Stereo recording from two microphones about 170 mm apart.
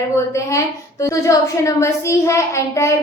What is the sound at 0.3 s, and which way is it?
A woman's voice, 20° left (ahead or behind).